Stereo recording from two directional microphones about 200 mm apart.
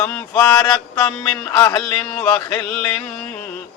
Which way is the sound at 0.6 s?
5° left (ahead or behind).